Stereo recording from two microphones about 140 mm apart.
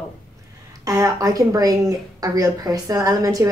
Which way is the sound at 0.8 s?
25° right (ahead or behind).